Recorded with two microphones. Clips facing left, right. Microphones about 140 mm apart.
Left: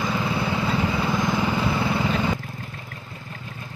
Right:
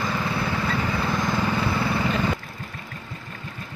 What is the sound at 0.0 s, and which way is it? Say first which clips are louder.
Vehicle: left 1 dB; 10° left (ahead or behind).